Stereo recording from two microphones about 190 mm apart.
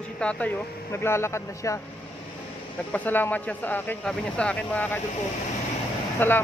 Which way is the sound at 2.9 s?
10° left (ahead or behind).